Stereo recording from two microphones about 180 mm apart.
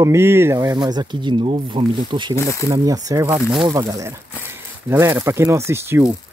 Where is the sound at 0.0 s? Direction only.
15° right (ahead or behind).